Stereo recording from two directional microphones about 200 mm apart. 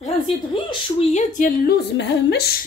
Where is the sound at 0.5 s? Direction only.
25° left (ahead or behind).